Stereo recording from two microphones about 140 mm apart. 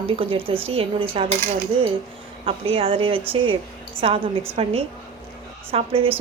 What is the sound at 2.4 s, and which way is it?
A woman's voice, 40° right (ahead or behind).